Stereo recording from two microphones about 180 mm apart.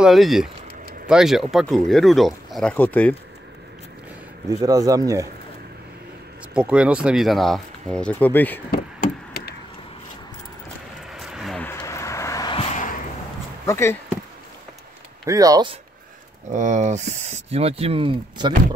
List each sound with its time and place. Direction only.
0.0 s speech: centre (ahead or behind)
4.5 s speech: 20° right (ahead or behind)
6.5 s speech: 5° right (ahead or behind); by 8.5 s 10° left (ahead or behind)
8.7 s chop: 60° left (ahead or behind)
11.1 s a sound: centre (ahead or behind)
11.6 s a sound: 15° left (ahead or behind)
12.5 s a sound: 40° left (ahead or behind)
13.7 s speech: 15° left (ahead or behind)
15.2 s speech: 20° right (ahead or behind)
16.4 s speech: 45° right (ahead or behind)